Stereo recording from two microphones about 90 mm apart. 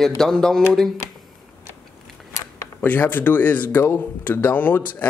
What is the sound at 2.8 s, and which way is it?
Speech, 20° left (ahead or behind).